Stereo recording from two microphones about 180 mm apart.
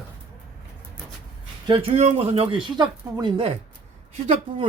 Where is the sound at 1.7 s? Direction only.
30° right (ahead or behind).